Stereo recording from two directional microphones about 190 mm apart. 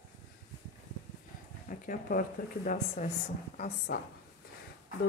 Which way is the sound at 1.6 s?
45° left (ahead or behind).